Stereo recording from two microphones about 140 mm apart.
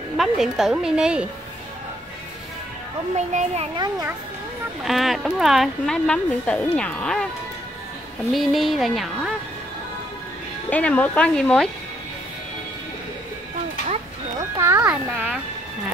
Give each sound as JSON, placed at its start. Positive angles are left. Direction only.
{"t": 0.2, "sound": "speech", "side_deg": 0}
{"t": 3.2, "sound": "a child's voice", "side_deg": -55}
{"t": 4.8, "sound": "speech", "side_deg": 0}
{"t": 8.3, "sound": "speech", "side_deg": 0}
{"t": 10.7, "sound": "speech", "side_deg": 10}
{"t": 14.6, "sound": "music", "side_deg": -15}